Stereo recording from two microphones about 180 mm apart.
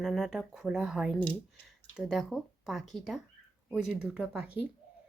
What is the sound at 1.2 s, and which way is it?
Speech, 5° left (ahead or behind).